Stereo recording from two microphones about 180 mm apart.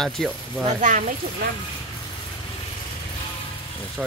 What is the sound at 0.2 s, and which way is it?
Speech, centre (ahead or behind).